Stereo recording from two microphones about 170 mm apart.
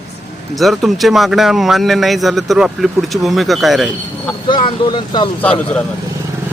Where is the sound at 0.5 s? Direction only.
Centre (ahead or behind).